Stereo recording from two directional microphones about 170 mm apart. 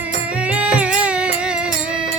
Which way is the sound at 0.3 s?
5° right (ahead or behind).